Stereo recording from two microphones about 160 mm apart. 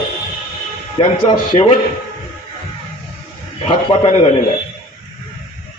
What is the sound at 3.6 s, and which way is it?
Speech, 35° left (ahead or behind).